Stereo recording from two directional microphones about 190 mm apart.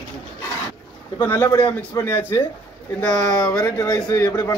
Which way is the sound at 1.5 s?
20° left (ahead or behind).